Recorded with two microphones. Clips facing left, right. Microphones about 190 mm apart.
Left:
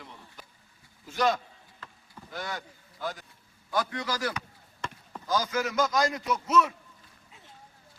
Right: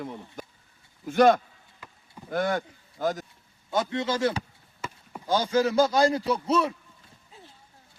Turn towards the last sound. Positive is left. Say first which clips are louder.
# right 1 dB
turn(degrees=-30)  # may be behind; listen again after turning